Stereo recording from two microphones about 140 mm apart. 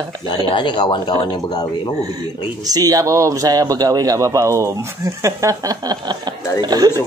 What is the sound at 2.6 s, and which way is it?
A man's voice, 25° right (ahead or behind).